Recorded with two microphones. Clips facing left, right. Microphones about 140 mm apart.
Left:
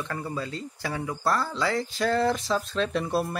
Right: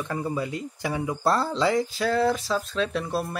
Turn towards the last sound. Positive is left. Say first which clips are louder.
# left 1 dB
turn(degrees=0)  # may be behind; listen again after turning